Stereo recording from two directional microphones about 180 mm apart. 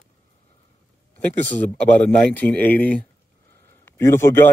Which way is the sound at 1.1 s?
10° left (ahead or behind).